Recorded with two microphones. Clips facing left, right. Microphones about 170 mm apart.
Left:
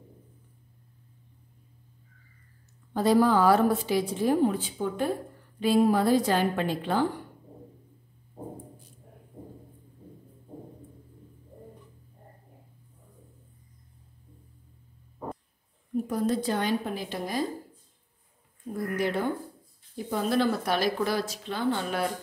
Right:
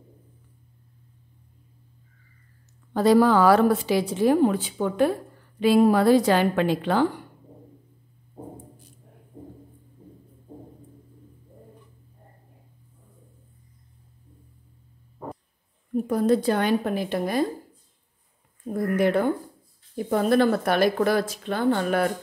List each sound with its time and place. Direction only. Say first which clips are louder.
2.9 s a woman's voice: right 4 dB; 80° right
16.1 s a woman's voice: right 7 dB; 60° right (ahead or behind)
18.7 s a woman's voice: right 7 dB; 55° right (ahead or behind)